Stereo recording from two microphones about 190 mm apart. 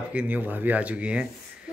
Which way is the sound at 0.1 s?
10° right (ahead or behind).